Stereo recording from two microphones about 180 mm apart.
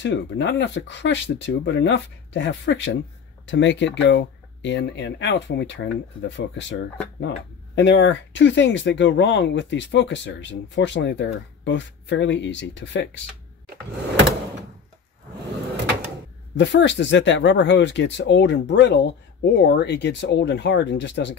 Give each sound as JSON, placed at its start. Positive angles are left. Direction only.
{"t": 0.0, "sound": "speech", "side_deg": 80}
{"t": 16.5, "sound": "speech", "side_deg": 75}